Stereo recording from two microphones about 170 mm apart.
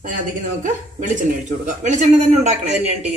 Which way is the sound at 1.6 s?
45° right (ahead or behind).